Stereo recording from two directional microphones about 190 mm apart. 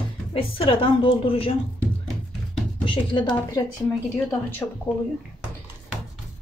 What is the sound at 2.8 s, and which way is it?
Speech, 25° left (ahead or behind).